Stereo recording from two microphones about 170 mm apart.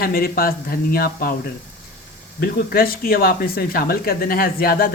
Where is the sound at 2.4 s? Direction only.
60° left (ahead or behind).